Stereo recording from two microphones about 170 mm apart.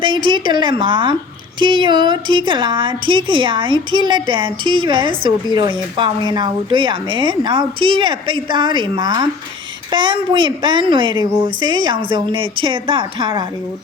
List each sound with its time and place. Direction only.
0.0 s a woman's voice: 30° right (ahead or behind)